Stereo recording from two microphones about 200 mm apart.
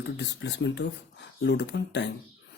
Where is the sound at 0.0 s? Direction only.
60° left (ahead or behind).